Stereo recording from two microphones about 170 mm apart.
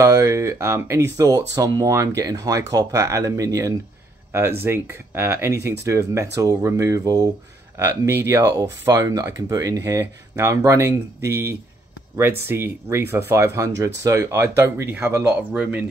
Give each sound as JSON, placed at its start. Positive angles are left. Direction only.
{"t": 0.0, "sound": "speech", "side_deg": -20}